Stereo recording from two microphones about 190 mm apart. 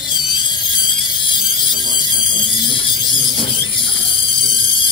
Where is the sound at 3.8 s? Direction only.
25° left (ahead or behind).